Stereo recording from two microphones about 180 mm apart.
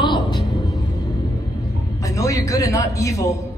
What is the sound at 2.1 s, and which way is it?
A man's voice, 20° left (ahead or behind).